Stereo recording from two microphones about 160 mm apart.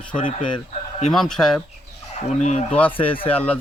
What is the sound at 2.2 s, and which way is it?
Speech, 45° left (ahead or behind).